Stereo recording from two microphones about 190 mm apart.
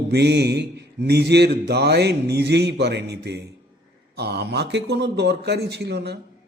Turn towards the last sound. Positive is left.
turn(degrees=-60)  # may be behind; listen again after turning